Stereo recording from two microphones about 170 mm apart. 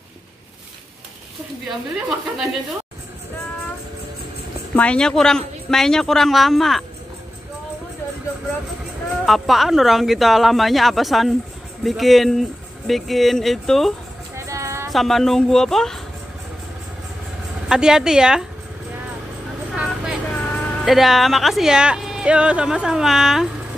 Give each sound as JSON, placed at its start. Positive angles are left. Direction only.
{"t": 2.0, "sound": "speech", "side_deg": 0}
{"t": 4.7, "sound": "speech", "side_deg": 5}
{"t": 9.2, "sound": "speech", "side_deg": 0}
{"t": 14.3, "sound": "music", "side_deg": -20}
{"t": 14.9, "sound": "speech", "side_deg": 0}
{"t": 17.6, "sound": "speech", "side_deg": -5}
{"t": 19.7, "sound": "vehicle", "side_deg": -5}
{"t": 20.5, "sound": "speech", "side_deg": 0}